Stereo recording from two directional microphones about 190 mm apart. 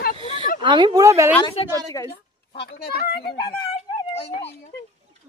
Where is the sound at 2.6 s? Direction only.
55° left (ahead or behind).